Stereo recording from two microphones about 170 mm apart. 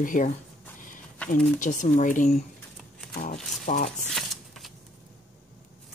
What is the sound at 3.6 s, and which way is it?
Speech, 45° left (ahead or behind).